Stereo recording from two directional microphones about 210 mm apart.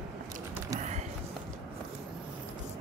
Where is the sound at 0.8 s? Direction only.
35° right (ahead or behind).